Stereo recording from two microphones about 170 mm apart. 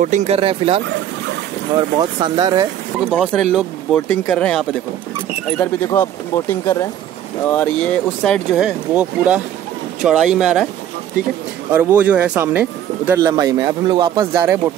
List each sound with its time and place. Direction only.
0.0 s speech: 45° right (ahead or behind); by 2.6 s 20° right (ahead or behind)
3.1 s speech: 5° left (ahead or behind)
5.9 s speech: 20° left (ahead or behind)
8.5 s speech: 5° right (ahead or behind)
11.7 s speech: 10° right (ahead or behind)